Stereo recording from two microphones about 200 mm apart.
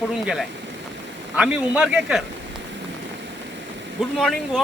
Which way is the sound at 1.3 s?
5° right (ahead or behind).